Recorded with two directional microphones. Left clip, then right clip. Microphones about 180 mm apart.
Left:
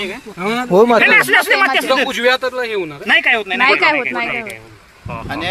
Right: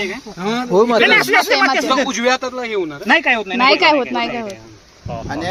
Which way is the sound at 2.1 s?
20° right (ahead or behind).